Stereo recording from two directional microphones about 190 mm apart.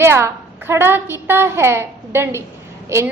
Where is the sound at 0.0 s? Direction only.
15° right (ahead or behind).